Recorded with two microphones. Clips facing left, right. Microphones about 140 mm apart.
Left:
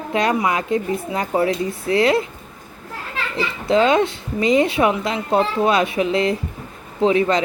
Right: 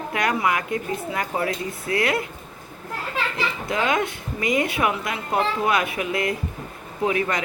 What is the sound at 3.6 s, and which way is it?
Speech, 25° left (ahead or behind).